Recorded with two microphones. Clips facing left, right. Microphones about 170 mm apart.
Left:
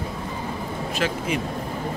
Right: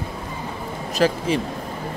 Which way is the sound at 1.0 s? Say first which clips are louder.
Right 7 dB; 35° right (ahead or behind).